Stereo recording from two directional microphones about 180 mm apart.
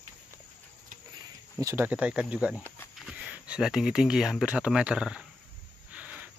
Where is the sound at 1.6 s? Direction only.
15° right (ahead or behind).